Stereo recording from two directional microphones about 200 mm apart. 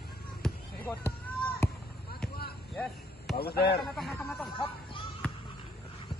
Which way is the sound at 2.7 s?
Centre (ahead or behind).